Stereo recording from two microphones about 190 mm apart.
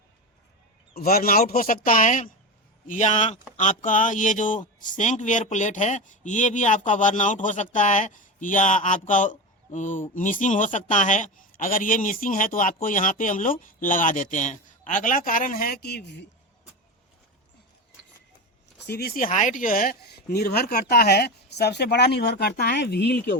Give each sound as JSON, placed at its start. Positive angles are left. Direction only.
{"t": 0.9, "sound": "a woman's voice", "side_deg": 50}
{"t": 18.9, "sound": "speech", "side_deg": 55}